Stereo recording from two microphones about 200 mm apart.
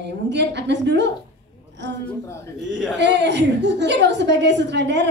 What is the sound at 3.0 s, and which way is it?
A man's voice, 60° right (ahead or behind).